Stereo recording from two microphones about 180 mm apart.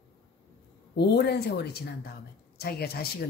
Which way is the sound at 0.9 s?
65° left (ahead or behind).